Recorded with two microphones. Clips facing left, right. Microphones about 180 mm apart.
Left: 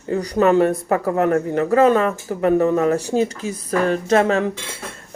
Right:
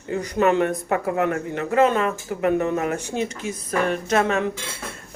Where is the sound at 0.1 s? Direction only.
40° left (ahead or behind).